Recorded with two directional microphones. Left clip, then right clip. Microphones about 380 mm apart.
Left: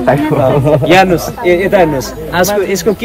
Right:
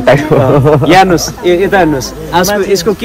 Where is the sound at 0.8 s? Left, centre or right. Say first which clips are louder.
Right 2 dB; centre.